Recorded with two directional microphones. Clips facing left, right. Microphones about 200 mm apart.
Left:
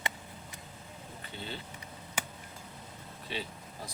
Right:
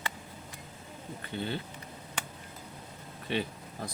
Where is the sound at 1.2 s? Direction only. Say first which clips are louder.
Right 8 dB; 60° right (ahead or behind).